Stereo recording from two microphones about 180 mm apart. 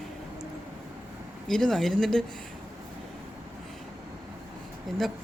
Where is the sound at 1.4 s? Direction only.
Centre (ahead or behind).